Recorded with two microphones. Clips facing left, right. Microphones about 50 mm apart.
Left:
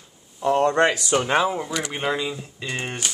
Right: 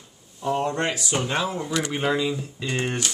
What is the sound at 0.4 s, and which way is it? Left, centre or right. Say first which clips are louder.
Speech: left 6 dB; left.